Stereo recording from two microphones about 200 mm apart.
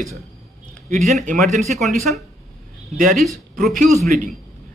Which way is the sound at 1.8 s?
Centre (ahead or behind).